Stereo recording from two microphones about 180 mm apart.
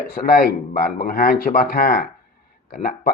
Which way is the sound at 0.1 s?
55° left (ahead or behind).